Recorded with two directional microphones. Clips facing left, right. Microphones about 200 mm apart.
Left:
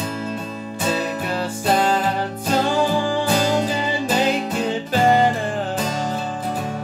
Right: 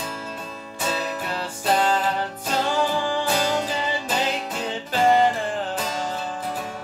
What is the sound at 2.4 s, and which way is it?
Music, 10° left (ahead or behind).